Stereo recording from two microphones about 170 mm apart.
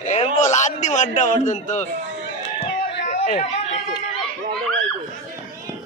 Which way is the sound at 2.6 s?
45° left (ahead or behind).